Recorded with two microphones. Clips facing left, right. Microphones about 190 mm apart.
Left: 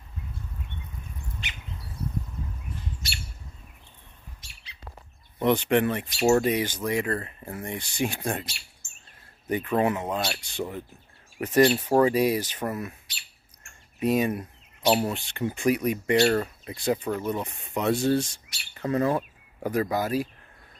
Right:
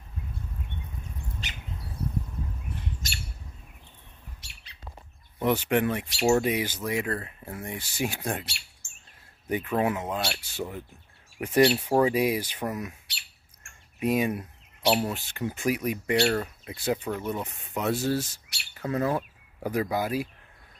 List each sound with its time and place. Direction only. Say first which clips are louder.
1.4 s a sound: right 1 dB; 40° right (ahead or behind)
3.0 s bird: right 1 dB; 45° right (ahead or behind)
5.4 s speech: left 2 dB; 10° right (ahead or behind)
9.5 s speech: left 2 dB; 10° right (ahead or behind)
13.9 s speech: left 2 dB; 10° right (ahead or behind)